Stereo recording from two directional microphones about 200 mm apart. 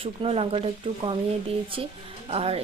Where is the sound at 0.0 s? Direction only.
30° right (ahead or behind).